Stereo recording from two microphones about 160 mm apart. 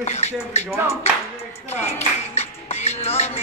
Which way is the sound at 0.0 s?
45° left (ahead or behind).